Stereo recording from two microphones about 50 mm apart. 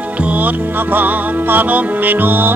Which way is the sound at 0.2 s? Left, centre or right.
Right.